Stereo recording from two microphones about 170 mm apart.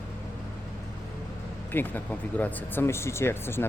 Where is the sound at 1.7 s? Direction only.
10° left (ahead or behind).